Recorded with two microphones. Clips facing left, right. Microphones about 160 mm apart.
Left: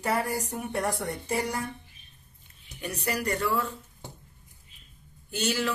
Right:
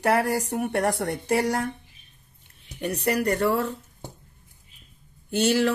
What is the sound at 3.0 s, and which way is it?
Speech, 60° right (ahead or behind).